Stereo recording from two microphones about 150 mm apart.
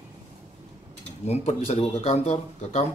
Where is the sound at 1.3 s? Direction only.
45° left (ahead or behind).